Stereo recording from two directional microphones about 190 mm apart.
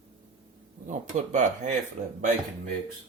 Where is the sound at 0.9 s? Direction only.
40° right (ahead or behind).